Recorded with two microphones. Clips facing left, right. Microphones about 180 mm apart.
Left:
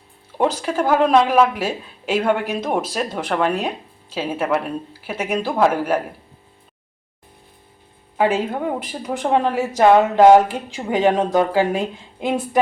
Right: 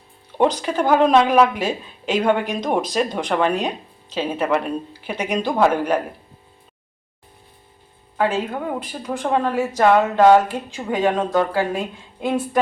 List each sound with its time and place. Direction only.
0.3 s speech: 5° left (ahead or behind)
8.2 s a woman's voice: 10° left (ahead or behind)